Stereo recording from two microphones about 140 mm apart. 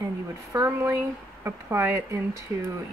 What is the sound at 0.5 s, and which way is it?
Speech, 20° right (ahead or behind).